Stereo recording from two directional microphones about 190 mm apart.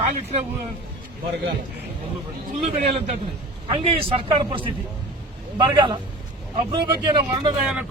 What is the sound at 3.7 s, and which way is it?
Speech, 30° right (ahead or behind).